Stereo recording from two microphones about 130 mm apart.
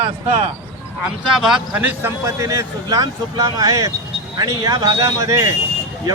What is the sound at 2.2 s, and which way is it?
Speech, 25° right (ahead or behind).